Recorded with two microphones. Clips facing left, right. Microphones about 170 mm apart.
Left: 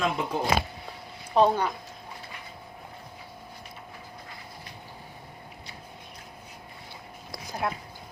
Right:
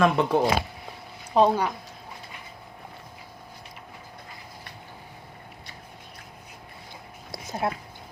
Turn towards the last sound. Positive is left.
turn(degrees=-25)  # may be behind; listen again after turning